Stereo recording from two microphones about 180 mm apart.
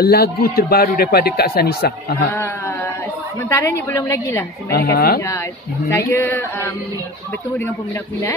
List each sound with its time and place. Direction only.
0.0 s a man's voice: 60° left (ahead or behind)
3.4 s a woman's voice: 15° left (ahead or behind)
4.6 s a man's voice: 60° left (ahead or behind)
5.9 s a woman's voice: 15° left (ahead or behind)